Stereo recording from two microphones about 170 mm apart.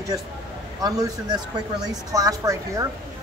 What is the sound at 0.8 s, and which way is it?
A woman's voice, 20° right (ahead or behind).